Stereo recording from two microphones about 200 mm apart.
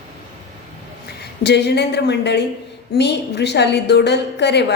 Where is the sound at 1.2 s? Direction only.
55° left (ahead or behind).